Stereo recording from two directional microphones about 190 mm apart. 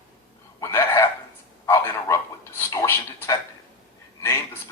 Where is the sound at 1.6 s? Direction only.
15° left (ahead or behind).